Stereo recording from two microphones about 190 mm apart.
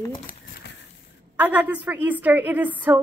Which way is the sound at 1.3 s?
10° right (ahead or behind).